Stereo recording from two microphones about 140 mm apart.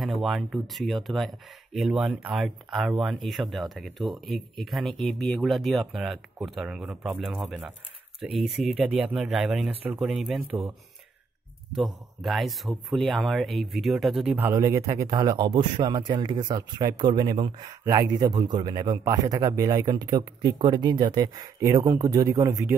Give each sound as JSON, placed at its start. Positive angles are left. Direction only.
{"t": 0.0, "sound": "speech", "side_deg": 0}
{"t": 11.7, "sound": "speech", "side_deg": 0}
{"t": 14.3, "sound": "speech", "side_deg": -20}